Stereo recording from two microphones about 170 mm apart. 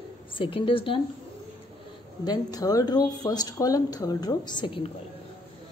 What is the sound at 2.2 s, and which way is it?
A woman's voice, 20° left (ahead or behind).